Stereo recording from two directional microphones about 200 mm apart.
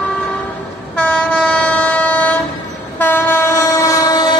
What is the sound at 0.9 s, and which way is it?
Train, 5° left (ahead or behind).